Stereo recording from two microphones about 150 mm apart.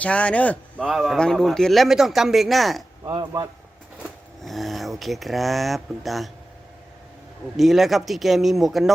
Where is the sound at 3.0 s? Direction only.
30° right (ahead or behind).